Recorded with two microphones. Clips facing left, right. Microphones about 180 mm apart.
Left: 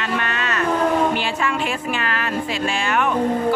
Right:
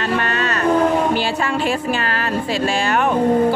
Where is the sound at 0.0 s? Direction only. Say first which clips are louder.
Right 4 dB; 35° right (ahead or behind).